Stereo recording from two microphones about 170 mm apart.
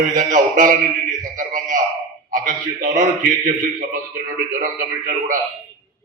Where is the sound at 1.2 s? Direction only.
50° right (ahead or behind).